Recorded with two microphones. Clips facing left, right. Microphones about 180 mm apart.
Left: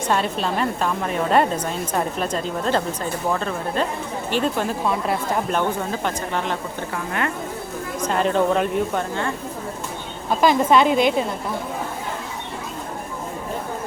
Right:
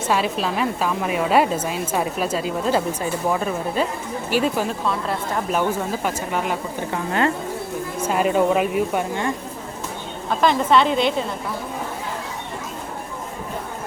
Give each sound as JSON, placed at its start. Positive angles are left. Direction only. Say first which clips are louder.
{"t": 0.1, "sound": "a woman's voice", "louder": "right 1 dB", "side_deg": -5}
{"t": 6.9, "sound": "speech", "louder": "right 5 dB", "side_deg": -30}
{"t": 7.9, "sound": "a woman's voice", "louder": "right 1 dB", "side_deg": -5}
{"t": 10.2, "sound": "a woman's voice", "louder": "left 2 dB", "side_deg": 10}